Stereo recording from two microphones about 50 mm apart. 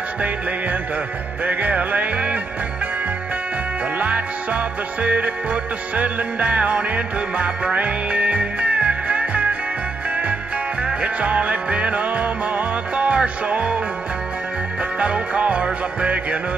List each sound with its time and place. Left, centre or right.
0.2 s music: right
4.0 s music: right
10.8 s music: right
14.8 s music: right